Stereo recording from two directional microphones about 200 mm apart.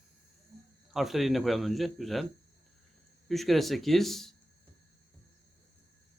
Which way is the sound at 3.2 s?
Centre (ahead or behind).